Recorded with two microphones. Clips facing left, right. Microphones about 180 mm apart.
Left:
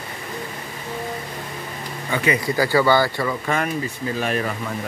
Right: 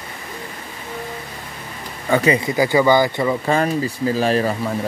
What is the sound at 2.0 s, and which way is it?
Speech, 45° right (ahead or behind).